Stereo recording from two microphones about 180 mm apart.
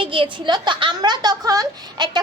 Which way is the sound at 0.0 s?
30° right (ahead or behind).